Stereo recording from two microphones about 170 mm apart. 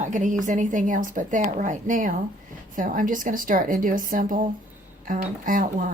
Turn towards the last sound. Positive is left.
turn(degrees=-50)  # may be behind; listen again after turning